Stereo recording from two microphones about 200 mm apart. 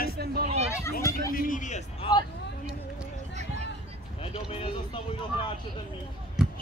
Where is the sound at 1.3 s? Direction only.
45° left (ahead or behind); by 2.2 s 25° left (ahead or behind).